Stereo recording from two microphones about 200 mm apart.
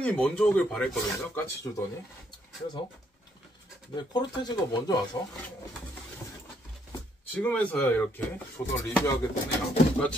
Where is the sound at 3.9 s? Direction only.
20° left (ahead or behind).